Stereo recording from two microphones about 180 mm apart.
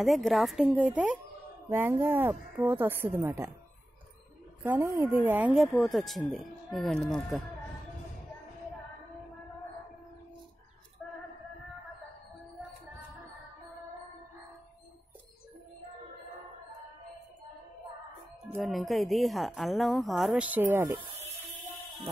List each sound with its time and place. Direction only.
0.0 s a woman's voice: centre (ahead or behind)
4.6 s a woman's voice: 15° right (ahead or behind)
18.6 s a woman's voice: centre (ahead or behind)
21.2 s music: 40° right (ahead or behind)